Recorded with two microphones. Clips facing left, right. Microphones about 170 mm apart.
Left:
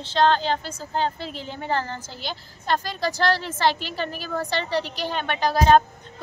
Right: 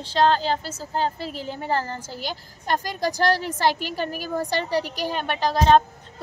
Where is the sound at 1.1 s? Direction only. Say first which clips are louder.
Right 2 dB; 40° right (ahead or behind).